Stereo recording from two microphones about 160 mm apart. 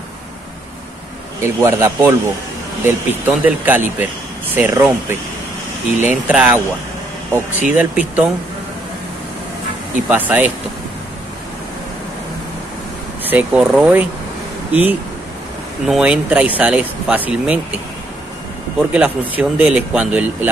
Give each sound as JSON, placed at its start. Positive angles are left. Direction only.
{"t": 1.4, "sound": "speech", "side_deg": -15}
{"t": 5.9, "sound": "speech", "side_deg": -10}
{"t": 7.7, "sound": "speech", "side_deg": -10}
{"t": 10.0, "sound": "speech", "side_deg": -10}
{"t": 13.2, "sound": "speech", "side_deg": -10}
{"t": 18.9, "sound": "speech", "side_deg": -10}